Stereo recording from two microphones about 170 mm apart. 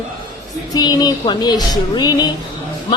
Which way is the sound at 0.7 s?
25° left (ahead or behind).